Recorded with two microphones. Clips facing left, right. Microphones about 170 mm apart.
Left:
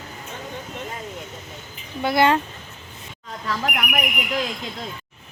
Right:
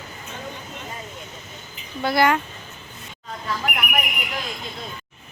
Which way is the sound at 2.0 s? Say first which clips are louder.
Left 1 dB; 20° left (ahead or behind).